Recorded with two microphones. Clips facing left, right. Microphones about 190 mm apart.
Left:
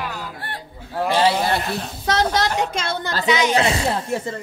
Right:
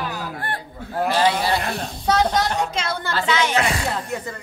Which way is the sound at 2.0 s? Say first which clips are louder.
Right 1 dB; 80° left.